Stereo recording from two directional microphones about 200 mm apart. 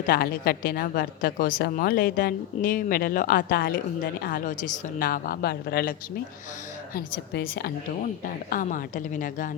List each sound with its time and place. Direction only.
0.1 s a woman's voice: 50° left (ahead or behind)
6.9 s a woman's voice: 50° left (ahead or behind)